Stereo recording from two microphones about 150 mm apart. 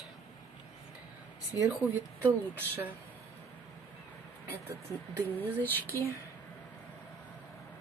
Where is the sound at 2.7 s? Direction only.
15° right (ahead or behind).